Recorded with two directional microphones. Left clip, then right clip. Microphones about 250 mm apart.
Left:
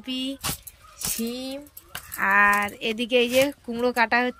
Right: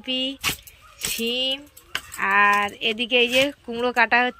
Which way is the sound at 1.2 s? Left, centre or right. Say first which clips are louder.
Right 9 dB; left.